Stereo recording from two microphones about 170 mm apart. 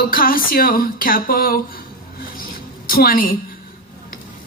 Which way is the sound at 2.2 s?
60° left (ahead or behind).